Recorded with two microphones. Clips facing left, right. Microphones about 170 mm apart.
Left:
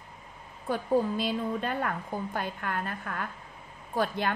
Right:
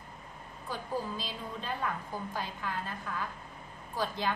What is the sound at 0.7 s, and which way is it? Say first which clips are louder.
A woman's voice: left 9 dB; 55° left (ahead or behind).